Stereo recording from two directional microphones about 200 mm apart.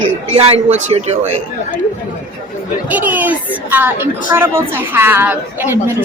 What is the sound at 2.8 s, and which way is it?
A woman's voice, 10° right (ahead or behind).